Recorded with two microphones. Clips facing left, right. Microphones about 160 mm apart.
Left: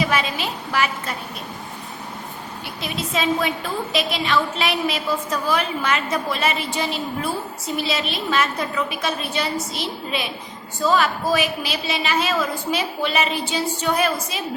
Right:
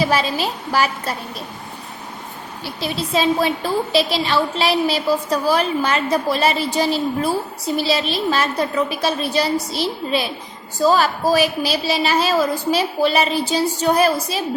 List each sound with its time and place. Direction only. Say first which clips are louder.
0.0 s a woman's voice: right 4 dB; 35° right (ahead or behind)
2.6 s a woman's voice: right 5 dB; 35° right (ahead or behind)